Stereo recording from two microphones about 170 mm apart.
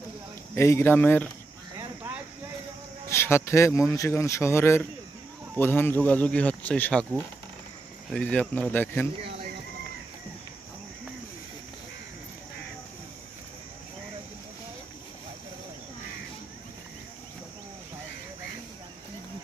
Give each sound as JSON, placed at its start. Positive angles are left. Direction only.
{"t": 0.6, "sound": "speech", "side_deg": 15}
{"t": 3.1, "sound": "speech", "side_deg": 15}